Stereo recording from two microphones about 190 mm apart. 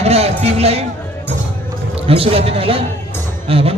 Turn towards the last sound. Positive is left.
turn(degrees=-30)  # may be behind; listen again after turning